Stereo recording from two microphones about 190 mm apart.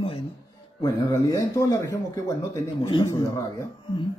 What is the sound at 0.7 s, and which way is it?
Speech, 20° left (ahead or behind).